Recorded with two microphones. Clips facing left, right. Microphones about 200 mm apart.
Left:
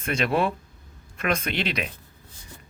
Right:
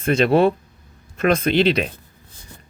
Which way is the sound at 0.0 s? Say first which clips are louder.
Right 8 dB; 30° right (ahead or behind).